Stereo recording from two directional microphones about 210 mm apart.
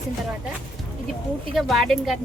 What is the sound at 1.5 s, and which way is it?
Speech, centre (ahead or behind).